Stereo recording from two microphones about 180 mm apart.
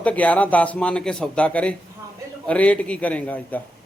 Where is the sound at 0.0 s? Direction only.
5° left (ahead or behind).